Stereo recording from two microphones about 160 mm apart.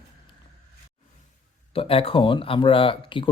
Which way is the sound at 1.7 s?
35° left (ahead or behind).